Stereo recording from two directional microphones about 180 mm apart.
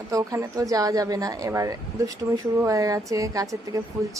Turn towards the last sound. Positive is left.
turn(degrees=-20)  # may be behind; listen again after turning